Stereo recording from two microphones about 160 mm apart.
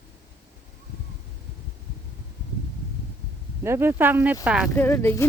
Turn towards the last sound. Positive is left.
turn(degrees=15)  # may be behind; listen again after turning